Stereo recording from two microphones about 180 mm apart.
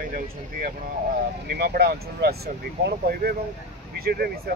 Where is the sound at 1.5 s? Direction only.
60° right (ahead or behind).